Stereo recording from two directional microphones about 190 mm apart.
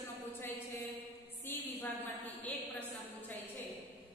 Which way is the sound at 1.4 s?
10° left (ahead or behind).